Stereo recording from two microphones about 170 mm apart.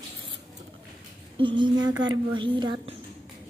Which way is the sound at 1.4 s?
30° right (ahead or behind).